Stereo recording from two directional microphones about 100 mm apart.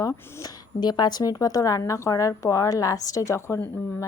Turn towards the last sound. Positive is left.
turn(degrees=25)  # may be behind; listen again after turning